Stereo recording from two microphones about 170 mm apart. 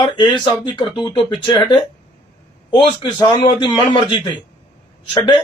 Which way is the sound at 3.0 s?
25° left (ahead or behind).